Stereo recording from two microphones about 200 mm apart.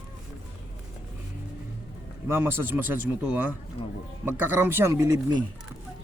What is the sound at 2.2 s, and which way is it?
Speech, 10° right (ahead or behind).